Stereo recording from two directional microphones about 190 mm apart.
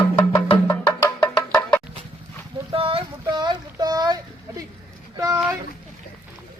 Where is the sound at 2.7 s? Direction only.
30° right (ahead or behind).